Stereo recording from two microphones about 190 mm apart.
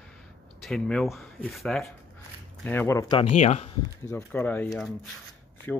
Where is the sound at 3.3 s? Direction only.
35° left (ahead or behind).